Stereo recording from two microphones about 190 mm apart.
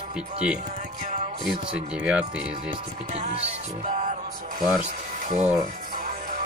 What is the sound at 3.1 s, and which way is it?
Music, 35° right (ahead or behind).